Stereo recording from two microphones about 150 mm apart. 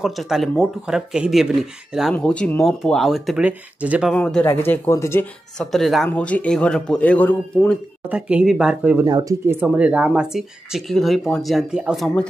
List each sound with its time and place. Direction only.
0.0 s speech: centre (ahead or behind)
2.1 s speech: 5° left (ahead or behind); by 4.1 s 10° right (ahead or behind)
4.1 s speech: 5° left (ahead or behind)
5.6 s speech: centre (ahead or behind)
8.1 s speech: 5° right (ahead or behind)
9.0 s speech: 25° right (ahead or behind); by 12.3 s centre (ahead or behind)